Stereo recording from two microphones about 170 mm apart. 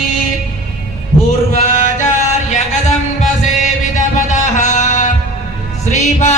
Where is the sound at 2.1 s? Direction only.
45° left (ahead or behind).